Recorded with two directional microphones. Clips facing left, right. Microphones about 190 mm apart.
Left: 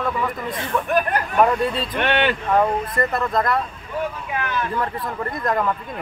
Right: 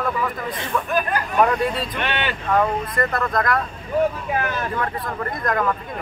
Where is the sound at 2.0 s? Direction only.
55° left (ahead or behind).